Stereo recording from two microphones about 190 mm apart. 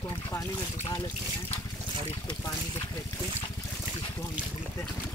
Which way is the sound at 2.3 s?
20° left (ahead or behind).